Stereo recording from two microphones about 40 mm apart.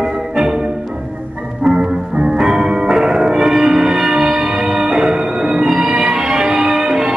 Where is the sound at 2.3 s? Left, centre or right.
Centre.